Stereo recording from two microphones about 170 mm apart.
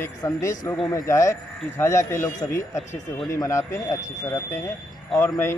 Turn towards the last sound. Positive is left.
turn(degrees=15)  # may be behind; listen again after turning